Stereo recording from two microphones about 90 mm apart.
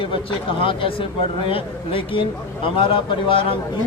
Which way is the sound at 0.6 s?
75° left (ahead or behind).